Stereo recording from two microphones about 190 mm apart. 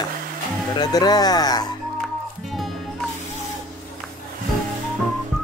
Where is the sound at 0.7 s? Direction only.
20° left (ahead or behind).